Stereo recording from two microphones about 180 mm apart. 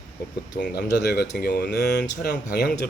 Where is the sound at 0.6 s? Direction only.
60° left (ahead or behind).